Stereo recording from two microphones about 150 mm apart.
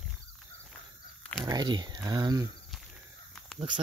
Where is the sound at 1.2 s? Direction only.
5° left (ahead or behind).